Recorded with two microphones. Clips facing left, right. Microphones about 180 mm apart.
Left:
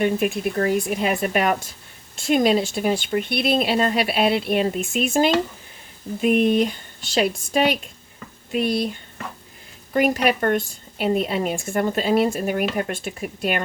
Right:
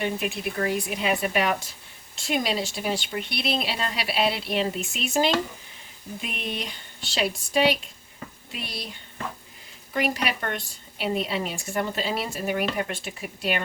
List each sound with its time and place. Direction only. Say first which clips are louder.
0.0 s a woman's voice: left 7 dB; 50° left (ahead or behind)